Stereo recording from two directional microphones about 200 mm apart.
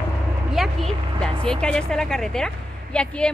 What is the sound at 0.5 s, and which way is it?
Speech, centre (ahead or behind).